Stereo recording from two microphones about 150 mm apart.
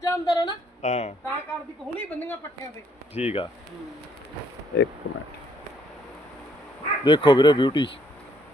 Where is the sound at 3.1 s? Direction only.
45° left (ahead or behind).